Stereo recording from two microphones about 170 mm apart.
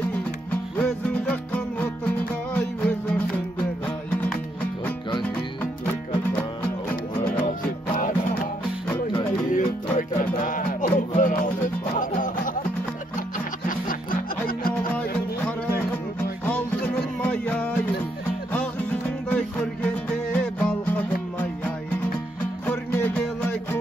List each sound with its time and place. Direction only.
0.7 s music: 5° left (ahead or behind)
6.6 s music: 10° left (ahead or behind)
7.3 s music: 50° left (ahead or behind)
8.9 s music: 25° left (ahead or behind)
9.5 s music: 50° left (ahead or behind)
16.4 s music: 10° left (ahead or behind)